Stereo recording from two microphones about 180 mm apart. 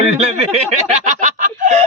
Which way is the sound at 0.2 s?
35° right (ahead or behind).